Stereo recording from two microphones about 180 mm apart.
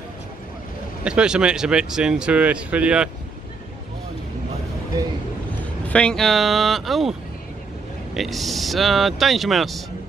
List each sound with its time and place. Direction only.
1.0 s speech: 5° right (ahead or behind)
4.9 s vehicle: 20° right (ahead or behind)
5.9 s speech: 5° left (ahead or behind)